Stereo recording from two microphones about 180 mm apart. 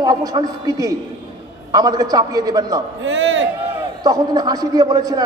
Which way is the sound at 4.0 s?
20° right (ahead or behind).